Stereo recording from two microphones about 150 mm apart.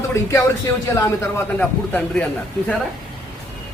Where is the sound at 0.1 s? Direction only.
20° left (ahead or behind).